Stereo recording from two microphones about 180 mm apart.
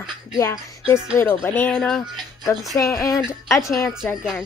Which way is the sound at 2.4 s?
20° left (ahead or behind).